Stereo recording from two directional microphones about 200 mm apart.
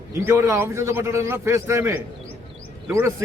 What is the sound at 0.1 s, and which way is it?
A man's voice, 15° right (ahead or behind).